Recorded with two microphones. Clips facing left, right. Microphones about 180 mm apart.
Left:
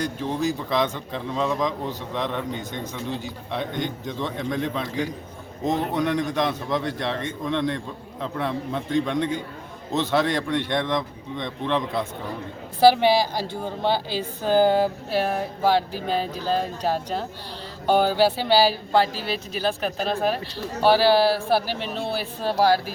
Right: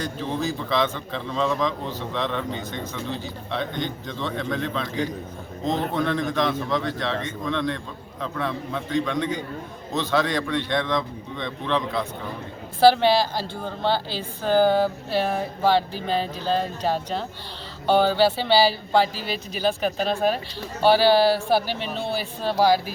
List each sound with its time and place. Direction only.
0.0 s a woman's voice: 15° left (ahead or behind)
3.5 s a woman's voice: 15° left (ahead or behind)